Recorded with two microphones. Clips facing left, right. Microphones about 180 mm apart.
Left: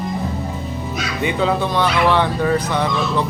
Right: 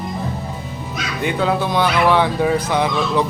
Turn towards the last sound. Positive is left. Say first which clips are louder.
# right 2 dB
turn(degrees=-10)  # may be behind; listen again after turning